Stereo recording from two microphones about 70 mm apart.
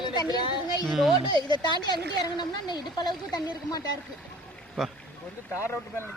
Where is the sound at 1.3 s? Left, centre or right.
Left.